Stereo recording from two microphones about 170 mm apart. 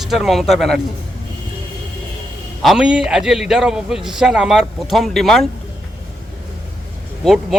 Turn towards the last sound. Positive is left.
turn(degrees=0)  # may be behind; listen again after turning